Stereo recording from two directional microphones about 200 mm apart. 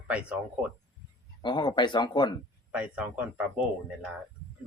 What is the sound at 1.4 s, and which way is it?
Speech, 20° left (ahead or behind).